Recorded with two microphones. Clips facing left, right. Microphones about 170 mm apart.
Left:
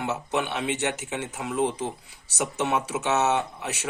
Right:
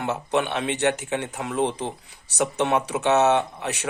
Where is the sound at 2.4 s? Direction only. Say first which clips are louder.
Right 4 dB; 60° right (ahead or behind).